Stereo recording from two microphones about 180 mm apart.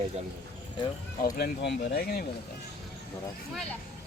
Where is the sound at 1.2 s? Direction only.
65° left (ahead or behind).